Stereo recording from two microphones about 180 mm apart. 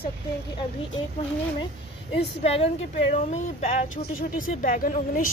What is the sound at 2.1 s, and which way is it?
A woman's voice, 35° left (ahead or behind).